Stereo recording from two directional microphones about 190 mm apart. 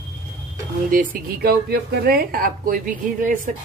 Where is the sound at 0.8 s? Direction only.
45° right (ahead or behind).